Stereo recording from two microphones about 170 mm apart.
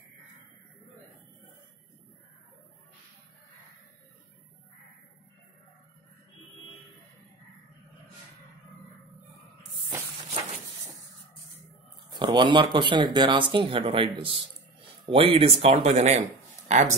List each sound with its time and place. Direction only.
12.1 s speech: 25° right (ahead or behind); by 16.9 s 45° right (ahead or behind)